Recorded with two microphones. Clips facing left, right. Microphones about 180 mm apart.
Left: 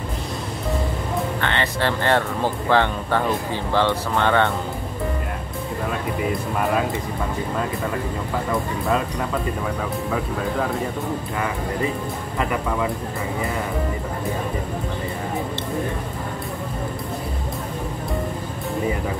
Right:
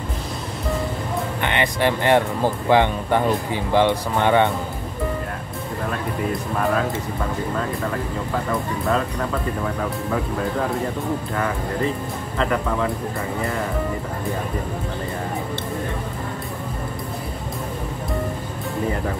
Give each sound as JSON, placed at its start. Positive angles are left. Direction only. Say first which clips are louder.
{"t": 1.4, "sound": "speech", "louder": "right 5 dB", "side_deg": -15}